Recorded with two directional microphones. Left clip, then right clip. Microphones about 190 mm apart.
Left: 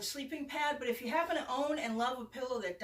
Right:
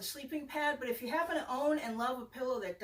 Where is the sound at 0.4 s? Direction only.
15° left (ahead or behind).